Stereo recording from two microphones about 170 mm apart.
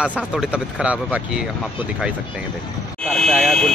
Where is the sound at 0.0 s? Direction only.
5° right (ahead or behind).